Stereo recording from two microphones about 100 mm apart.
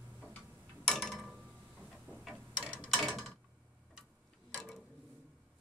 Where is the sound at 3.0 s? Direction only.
Centre (ahead or behind).